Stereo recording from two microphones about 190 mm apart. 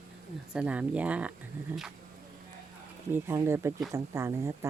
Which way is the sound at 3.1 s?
10° right (ahead or behind).